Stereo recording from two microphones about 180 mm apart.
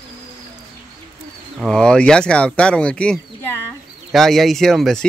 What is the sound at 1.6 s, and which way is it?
Speech, 5° left (ahead or behind).